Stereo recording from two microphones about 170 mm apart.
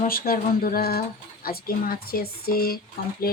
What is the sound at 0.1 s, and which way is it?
Speech, 60° left (ahead or behind).